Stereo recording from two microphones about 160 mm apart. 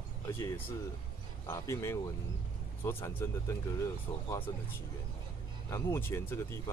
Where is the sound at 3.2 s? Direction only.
15° left (ahead or behind).